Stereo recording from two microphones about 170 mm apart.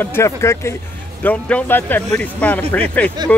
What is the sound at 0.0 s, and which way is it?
Speech, 15° left (ahead or behind).